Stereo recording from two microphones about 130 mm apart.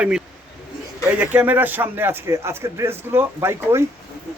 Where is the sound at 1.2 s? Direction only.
15° right (ahead or behind).